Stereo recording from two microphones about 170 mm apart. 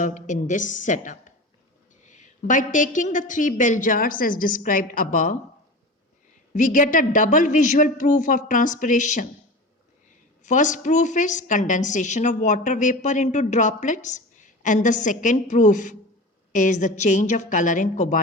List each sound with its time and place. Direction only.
0.0 s a woman's voice: 45° left (ahead or behind)
6.5 s a woman's voice: 50° left (ahead or behind)
10.4 s a woman's voice: 45° left (ahead or behind)